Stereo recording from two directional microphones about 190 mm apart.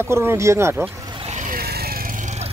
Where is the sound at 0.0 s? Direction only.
10° right (ahead or behind).